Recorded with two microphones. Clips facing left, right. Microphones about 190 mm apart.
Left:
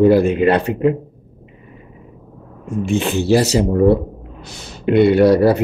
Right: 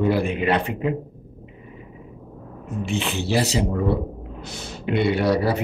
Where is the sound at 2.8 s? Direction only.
45° left (ahead or behind).